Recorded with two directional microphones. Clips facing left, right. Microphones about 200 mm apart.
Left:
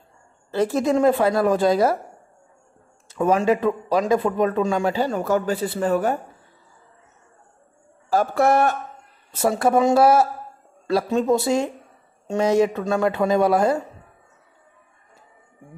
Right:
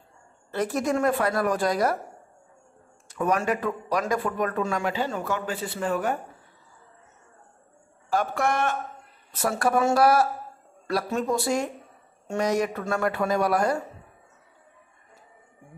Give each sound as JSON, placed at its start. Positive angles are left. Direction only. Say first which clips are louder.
{"t": 0.5, "sound": "speech", "louder": "left 5 dB", "side_deg": 25}
{"t": 3.1, "sound": "speech", "louder": "left 6 dB", "side_deg": 25}
{"t": 8.1, "sound": "a man's voice", "louder": "left 7 dB", "side_deg": 35}
{"t": 9.3, "sound": "speech", "louder": "left 5 dB", "side_deg": 25}